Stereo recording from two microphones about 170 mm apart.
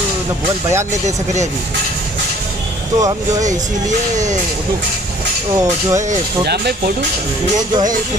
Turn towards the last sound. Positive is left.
turn(degrees=-70)  # may be behind; listen again after turning